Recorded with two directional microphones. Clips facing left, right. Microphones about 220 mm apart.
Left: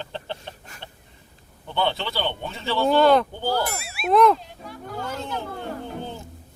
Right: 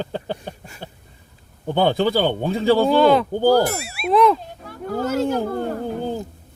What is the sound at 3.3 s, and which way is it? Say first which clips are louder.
Ding: right 10 dB; 40° right (ahead or behind).